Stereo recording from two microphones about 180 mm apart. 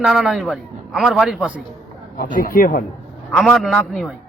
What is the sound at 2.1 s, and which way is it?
Speech, 50° left (ahead or behind).